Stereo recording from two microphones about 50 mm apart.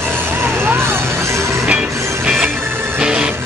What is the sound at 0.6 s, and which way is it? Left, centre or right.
Music, right.